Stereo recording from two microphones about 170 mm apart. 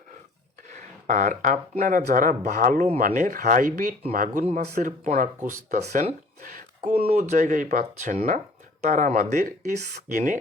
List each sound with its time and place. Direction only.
0.7 s speech: 45° right (ahead or behind)
4.6 s speech: 65° right (ahead or behind)
4.9 s speech: 50° right (ahead or behind)